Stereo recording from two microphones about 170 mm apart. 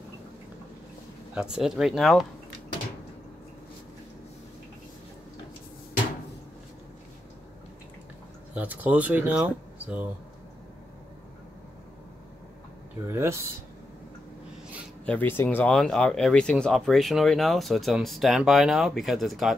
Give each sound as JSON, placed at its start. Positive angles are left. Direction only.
{"t": 1.3, "sound": "speech", "side_deg": -5}
{"t": 8.5, "sound": "speech", "side_deg": -10}
{"t": 13.0, "sound": "speech", "side_deg": -15}
{"t": 15.0, "sound": "speech", "side_deg": 10}